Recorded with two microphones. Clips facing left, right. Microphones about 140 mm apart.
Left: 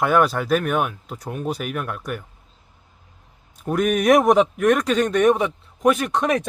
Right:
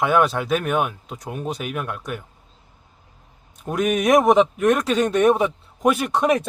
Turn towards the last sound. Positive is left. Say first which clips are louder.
# right 1 dB
turn(degrees=-10)  # may be behind; listen again after turning